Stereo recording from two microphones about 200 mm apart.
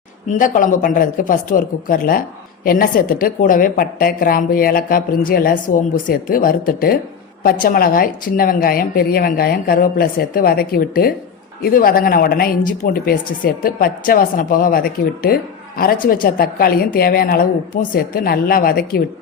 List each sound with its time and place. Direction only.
0.3 s a woman's voice: 40° left (ahead or behind)